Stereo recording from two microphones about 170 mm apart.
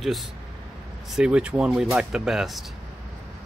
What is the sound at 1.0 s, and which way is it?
Speech, 5° right (ahead or behind).